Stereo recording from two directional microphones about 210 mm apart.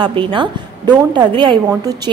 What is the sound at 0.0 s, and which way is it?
A woman's voice, 25° right (ahead or behind).